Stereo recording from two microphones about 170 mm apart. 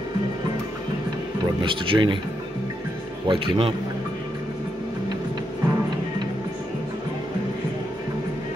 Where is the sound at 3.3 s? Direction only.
30° right (ahead or behind).